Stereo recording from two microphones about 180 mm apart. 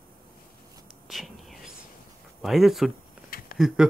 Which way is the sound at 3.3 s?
55° left (ahead or behind).